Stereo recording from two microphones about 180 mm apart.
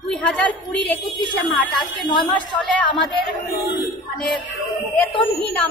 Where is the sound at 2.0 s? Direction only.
25° left (ahead or behind).